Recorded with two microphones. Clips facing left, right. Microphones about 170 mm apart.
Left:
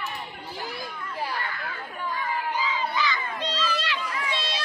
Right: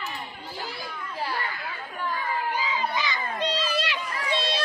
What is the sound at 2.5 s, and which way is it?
Crowd, 15° right (ahead or behind).